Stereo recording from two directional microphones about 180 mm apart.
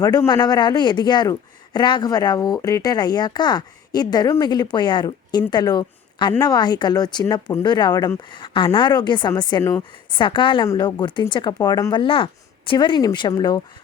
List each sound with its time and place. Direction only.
0.0 s a man's voice: 20° left (ahead or behind)